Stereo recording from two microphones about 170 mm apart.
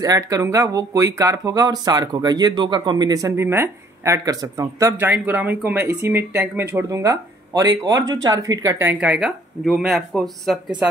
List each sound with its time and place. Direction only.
0.0 s speech: 20° right (ahead or behind); by 10.9 s 5° right (ahead or behind)